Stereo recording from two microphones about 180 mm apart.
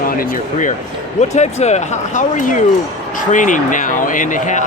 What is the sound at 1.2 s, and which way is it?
Speech, 40° left (ahead or behind).